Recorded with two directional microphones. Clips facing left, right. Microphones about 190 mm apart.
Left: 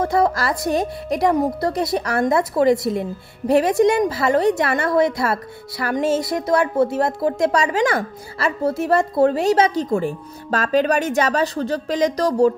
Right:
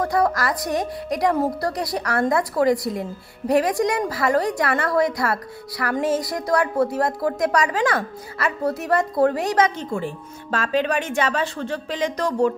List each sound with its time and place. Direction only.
0.0 s speech: 25° left (ahead or behind)
9.8 s speech: 40° left (ahead or behind)